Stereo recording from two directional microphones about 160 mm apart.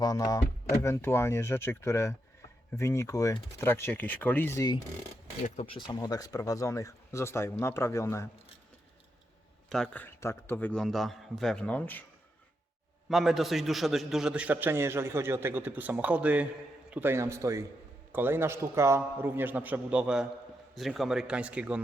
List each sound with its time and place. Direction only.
0.0 s a man's voice: 25° left (ahead or behind)
5.4 s speech: 50° left (ahead or behind)
5.6 s speech: 30° left (ahead or behind)
9.6 s a man's voice: 5° left (ahead or behind)
13.1 s a man's voice: centre (ahead or behind)